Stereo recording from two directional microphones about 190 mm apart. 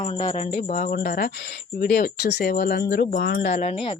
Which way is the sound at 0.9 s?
55° left (ahead or behind).